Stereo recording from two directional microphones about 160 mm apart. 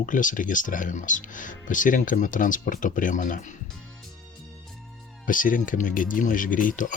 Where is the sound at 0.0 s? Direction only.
55° left (ahead or behind).